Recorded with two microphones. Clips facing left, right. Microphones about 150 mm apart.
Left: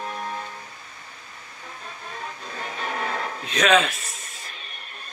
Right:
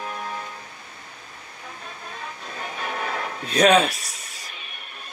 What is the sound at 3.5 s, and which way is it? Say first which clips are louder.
Speech: right 3 dB; 35° right (ahead or behind).